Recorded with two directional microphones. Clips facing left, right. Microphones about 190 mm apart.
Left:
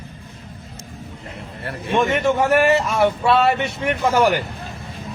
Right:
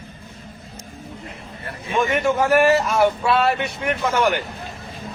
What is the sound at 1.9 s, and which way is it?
Speech, centre (ahead or behind).